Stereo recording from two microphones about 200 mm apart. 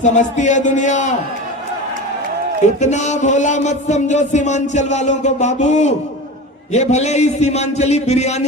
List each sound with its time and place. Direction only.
0.0 s speech: 35° left (ahead or behind)
2.8 s speech: 35° left (ahead or behind)